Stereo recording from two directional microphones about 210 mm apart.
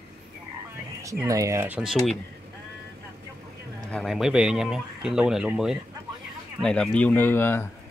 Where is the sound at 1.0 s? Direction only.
15° right (ahead or behind); by 2.2 s centre (ahead or behind).